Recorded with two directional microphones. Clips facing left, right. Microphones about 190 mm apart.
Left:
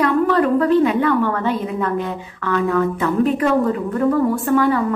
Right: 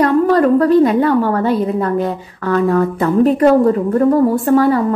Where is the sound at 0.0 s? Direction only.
40° right (ahead or behind).